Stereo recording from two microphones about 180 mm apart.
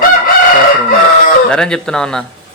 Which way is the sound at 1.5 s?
5° left (ahead or behind).